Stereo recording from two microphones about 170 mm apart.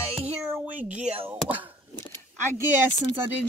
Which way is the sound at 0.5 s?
10° right (ahead or behind).